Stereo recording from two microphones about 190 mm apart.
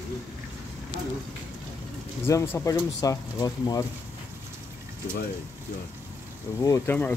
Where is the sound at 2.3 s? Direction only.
15° left (ahead or behind).